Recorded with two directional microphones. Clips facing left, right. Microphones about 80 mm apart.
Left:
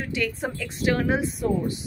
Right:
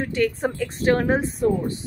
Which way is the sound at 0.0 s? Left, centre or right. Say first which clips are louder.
Right 5 dB; right.